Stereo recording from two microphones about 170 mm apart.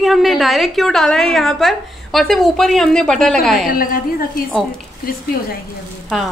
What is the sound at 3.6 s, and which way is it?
Speech, 60° left (ahead or behind).